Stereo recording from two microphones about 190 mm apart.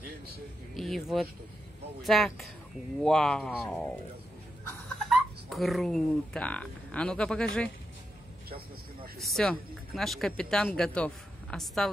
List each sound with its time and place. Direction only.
0.7 s a sound: centre (ahead or behind)
2.0 s speech: centre (ahead or behind)
5.1 s speech: centre (ahead or behind)
8.5 s vehicle: 50° right (ahead or behind)
9.3 s speech: centre (ahead or behind)